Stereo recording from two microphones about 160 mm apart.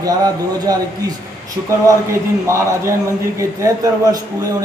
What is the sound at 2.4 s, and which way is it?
A man's voice, 20° right (ahead or behind).